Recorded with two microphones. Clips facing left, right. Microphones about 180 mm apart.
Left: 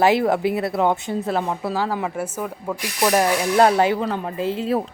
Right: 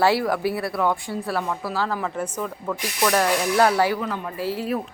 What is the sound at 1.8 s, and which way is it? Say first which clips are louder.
A woman's voice: even; 15° left (ahead or behind).